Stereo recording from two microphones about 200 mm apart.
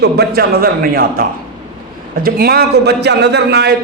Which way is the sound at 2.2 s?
50° right (ahead or behind).